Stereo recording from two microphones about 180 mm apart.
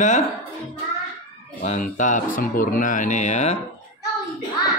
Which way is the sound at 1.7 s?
45° left (ahead or behind).